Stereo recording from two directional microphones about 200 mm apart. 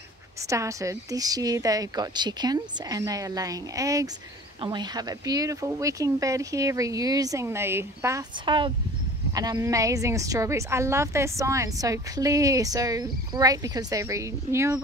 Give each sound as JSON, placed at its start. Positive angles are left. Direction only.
{"t": 0.5, "sound": "a woman's voice", "side_deg": -15}